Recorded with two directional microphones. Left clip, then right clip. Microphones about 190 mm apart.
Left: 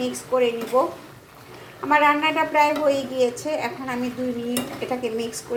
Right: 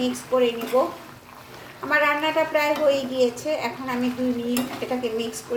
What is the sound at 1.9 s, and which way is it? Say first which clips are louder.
A woman's voice: left 3 dB; 10° left (ahead or behind).